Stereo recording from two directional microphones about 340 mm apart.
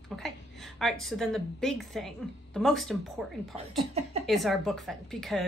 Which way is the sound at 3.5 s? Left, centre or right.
Centre.